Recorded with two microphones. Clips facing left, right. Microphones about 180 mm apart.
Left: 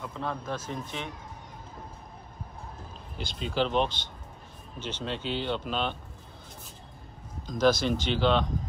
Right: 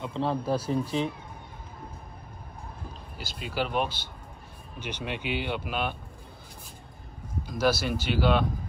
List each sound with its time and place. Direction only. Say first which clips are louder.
0.0 s speech: right 6 dB; 30° right (ahead or behind)
3.2 s speech: left 3 dB; 5° right (ahead or behind)
7.4 s speech: left 2 dB; 10° right (ahead or behind)